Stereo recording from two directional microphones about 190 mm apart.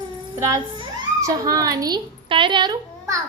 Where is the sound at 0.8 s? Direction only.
20° right (ahead or behind).